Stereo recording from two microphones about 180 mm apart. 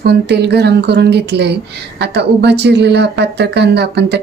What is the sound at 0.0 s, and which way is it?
Speech, 65° right (ahead or behind).